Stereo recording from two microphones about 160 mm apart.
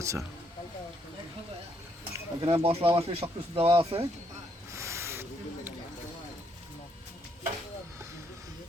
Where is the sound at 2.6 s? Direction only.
35° right (ahead or behind).